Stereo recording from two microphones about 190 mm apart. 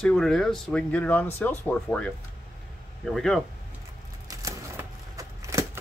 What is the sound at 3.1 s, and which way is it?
Speech, centre (ahead or behind).